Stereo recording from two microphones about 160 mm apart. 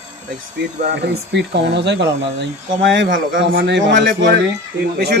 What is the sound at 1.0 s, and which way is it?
Speech, 90° right.